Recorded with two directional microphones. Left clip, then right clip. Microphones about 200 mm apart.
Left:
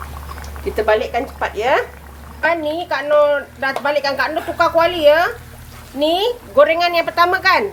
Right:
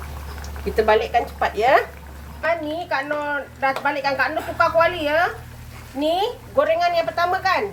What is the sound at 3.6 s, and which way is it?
A woman's voice, 55° left (ahead or behind).